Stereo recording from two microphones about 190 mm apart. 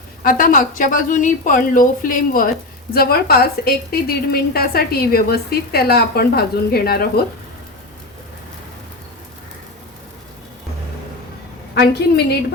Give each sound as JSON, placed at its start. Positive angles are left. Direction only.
{"t": 0.2, "sound": "a woman's voice", "side_deg": 45}
{"t": 11.7, "sound": "a woman's voice", "side_deg": 60}